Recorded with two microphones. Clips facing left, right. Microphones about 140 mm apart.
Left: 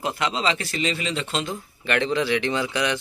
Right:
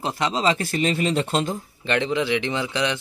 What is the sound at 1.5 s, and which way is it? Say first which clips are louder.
Speech: right 1 dB; 25° right (ahead or behind).